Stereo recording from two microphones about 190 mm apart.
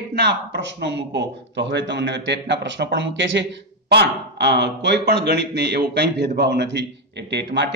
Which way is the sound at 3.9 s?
60° right (ahead or behind).